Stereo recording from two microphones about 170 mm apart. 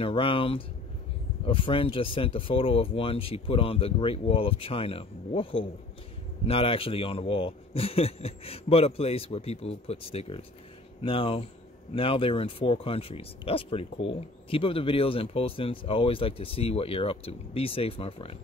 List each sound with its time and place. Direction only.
0.0 s speech: 30° left (ahead or behind)